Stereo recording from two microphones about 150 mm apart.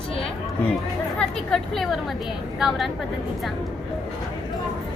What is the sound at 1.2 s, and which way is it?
A woman's voice, 5° left (ahead or behind).